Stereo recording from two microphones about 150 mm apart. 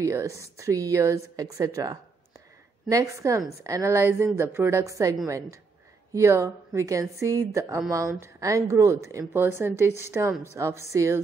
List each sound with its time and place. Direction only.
0.0 s a woman's voice: 20° right (ahead or behind)